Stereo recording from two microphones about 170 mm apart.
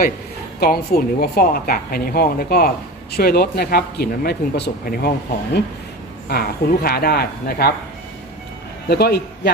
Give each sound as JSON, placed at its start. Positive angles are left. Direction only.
{"t": 0.6, "sound": "a woman's voice", "side_deg": 65}
{"t": 6.2, "sound": "a woman's voice", "side_deg": 65}
{"t": 8.9, "sound": "a man's voice", "side_deg": 70}